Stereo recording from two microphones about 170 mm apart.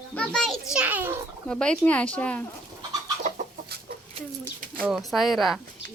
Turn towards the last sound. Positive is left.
turn(degrees=0)  # may be behind; listen again after turning